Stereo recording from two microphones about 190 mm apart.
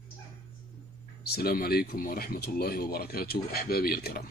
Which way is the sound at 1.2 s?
55° left (ahead or behind).